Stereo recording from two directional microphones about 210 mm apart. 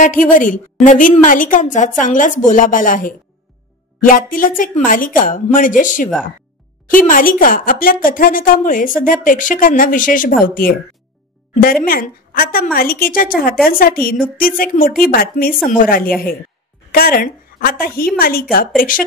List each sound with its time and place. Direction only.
0.0 s a woman's voice: 40° left (ahead or behind)
11.8 s a woman's voice: 45° left (ahead or behind)